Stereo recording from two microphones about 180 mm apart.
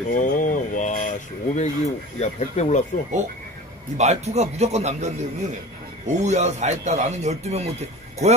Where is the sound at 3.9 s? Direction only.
40° right (ahead or behind).